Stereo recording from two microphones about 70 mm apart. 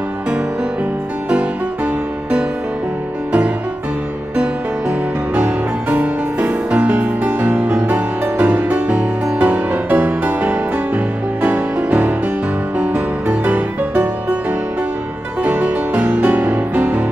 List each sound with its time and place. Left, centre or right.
5.3 s music: right
15.4 s music: centre